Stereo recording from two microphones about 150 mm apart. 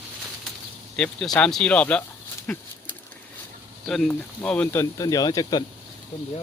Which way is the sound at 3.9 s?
5° left (ahead or behind).